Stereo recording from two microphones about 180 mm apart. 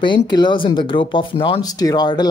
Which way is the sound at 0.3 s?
25° left (ahead or behind).